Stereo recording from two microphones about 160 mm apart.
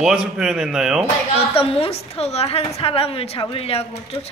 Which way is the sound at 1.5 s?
35° left (ahead or behind).